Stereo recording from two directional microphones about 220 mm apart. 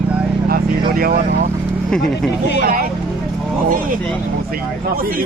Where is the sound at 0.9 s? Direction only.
40° right (ahead or behind).